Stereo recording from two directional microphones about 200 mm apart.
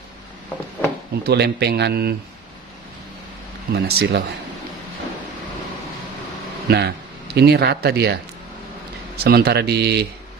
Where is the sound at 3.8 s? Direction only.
55° right (ahead or behind).